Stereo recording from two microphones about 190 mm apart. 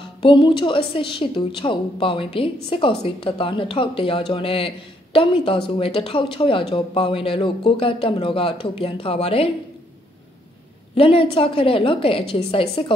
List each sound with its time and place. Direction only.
0.0 s speech: 25° left (ahead or behind)
11.0 s speech: 30° left (ahead or behind)